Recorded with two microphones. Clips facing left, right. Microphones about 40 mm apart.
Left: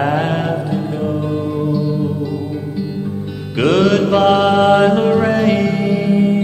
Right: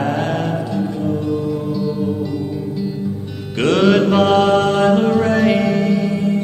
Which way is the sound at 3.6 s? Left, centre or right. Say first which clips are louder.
Left 2 dB; centre.